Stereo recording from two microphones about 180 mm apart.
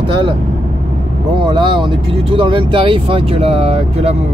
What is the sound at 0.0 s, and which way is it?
Speech, 30° right (ahead or behind).